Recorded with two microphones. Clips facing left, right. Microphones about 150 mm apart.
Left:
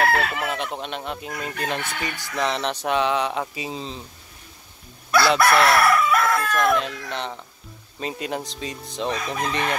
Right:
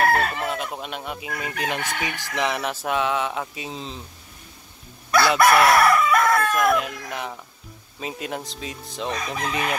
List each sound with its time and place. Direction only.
0.0 s chicken: 40° right (ahead or behind)
0.5 s fowl: 5° right (ahead or behind)
5.1 s chicken: 10° right (ahead or behind)
6.3 s fowl: 5° right (ahead or behind)